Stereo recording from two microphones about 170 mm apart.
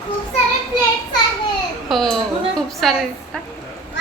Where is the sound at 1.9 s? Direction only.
Centre (ahead or behind).